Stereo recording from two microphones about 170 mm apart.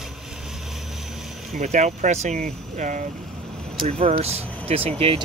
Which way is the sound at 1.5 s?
45° right (ahead or behind).